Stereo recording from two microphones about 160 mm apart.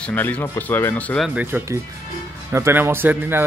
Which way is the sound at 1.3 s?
10° right (ahead or behind).